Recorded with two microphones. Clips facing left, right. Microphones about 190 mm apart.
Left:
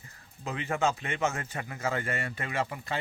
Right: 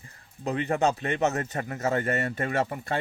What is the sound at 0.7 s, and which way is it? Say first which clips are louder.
A man's voice: right 3 dB; 40° right (ahead or behind).